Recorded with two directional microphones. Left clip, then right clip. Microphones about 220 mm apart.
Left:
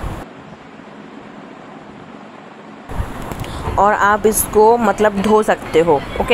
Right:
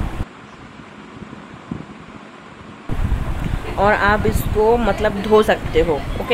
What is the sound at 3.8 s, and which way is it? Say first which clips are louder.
Speech: left 3 dB; 20° left (ahead or behind).